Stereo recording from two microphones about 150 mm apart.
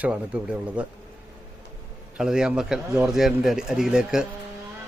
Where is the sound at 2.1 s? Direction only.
5° right (ahead or behind).